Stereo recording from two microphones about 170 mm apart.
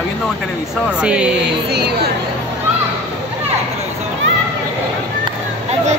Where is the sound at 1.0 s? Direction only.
5° right (ahead or behind).